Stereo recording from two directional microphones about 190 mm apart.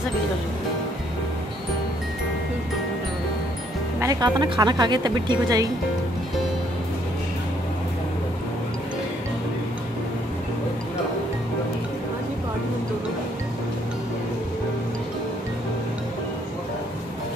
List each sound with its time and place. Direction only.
4.0 s speech: 20° right (ahead or behind)